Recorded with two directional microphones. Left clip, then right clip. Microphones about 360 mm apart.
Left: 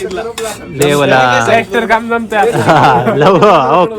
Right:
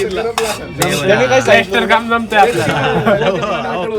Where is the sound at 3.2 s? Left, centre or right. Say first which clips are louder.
Left 9 dB; centre.